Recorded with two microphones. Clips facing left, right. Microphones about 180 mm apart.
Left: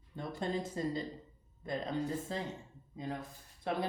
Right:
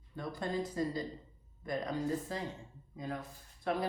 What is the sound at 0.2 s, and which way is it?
Speech, 25° left (ahead or behind).